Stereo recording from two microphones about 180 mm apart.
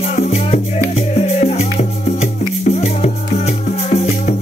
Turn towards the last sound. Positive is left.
turn(degrees=35)  # may be behind; listen again after turning